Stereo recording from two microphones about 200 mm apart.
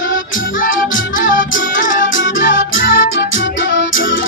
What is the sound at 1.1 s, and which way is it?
Music, 40° left (ahead or behind).